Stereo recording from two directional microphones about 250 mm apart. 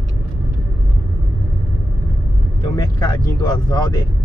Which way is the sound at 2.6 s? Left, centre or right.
Centre.